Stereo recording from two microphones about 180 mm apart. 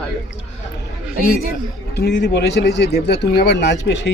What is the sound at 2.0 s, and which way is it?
Speech, 70° left (ahead or behind).